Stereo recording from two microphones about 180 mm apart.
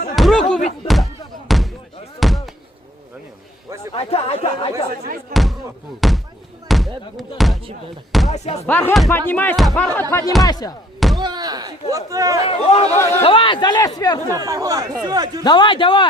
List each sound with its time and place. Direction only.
0.2 s a sound: centre (ahead or behind)
2.1 s slam: centre (ahead or behind)
3.9 s speech: 35° left (ahead or behind)
5.3 s a man's voice: centre (ahead or behind); by 10.8 s 20° left (ahead or behind)
11.2 s speech: 25° right (ahead or behind)
12.5 s speech: 35° left (ahead or behind)
12.9 s speech: 15° left (ahead or behind)
13.2 s a man's voice: 30° left (ahead or behind)
14.3 s speech: 20° right (ahead or behind)
15.4 s a man's voice: 25° left (ahead or behind)